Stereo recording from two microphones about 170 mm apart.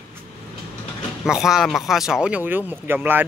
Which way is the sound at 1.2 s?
Centre (ahead or behind).